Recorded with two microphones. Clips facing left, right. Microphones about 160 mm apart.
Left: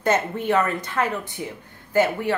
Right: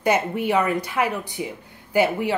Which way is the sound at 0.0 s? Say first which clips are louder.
Right 1 dB; 10° right (ahead or behind).